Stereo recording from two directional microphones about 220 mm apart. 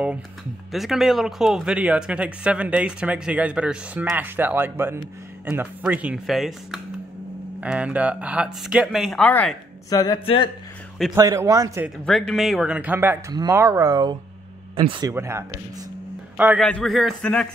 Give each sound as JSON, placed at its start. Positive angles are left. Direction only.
{"t": 0.7, "sound": "speech", "side_deg": 0}
{"t": 11.1, "sound": "speech", "side_deg": -15}
{"t": 12.0, "sound": "a man's voice", "side_deg": 0}
{"t": 16.6, "sound": "speech", "side_deg": 5}